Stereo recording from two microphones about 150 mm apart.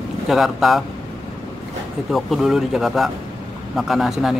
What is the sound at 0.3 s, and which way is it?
Speech, centre (ahead or behind).